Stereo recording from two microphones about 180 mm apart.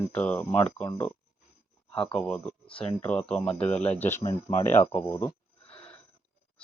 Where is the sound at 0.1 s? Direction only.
10° left (ahead or behind).